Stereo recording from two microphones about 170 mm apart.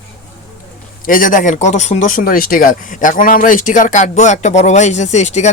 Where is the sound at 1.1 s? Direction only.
55° left (ahead or behind).